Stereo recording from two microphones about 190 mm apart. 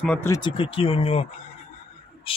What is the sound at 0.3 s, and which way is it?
Speech, 25° left (ahead or behind).